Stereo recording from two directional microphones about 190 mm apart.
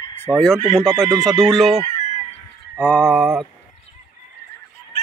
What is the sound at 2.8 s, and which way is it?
Speech, 5° left (ahead or behind).